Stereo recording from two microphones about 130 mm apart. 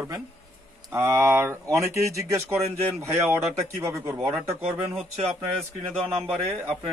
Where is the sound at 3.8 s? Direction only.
20° right (ahead or behind).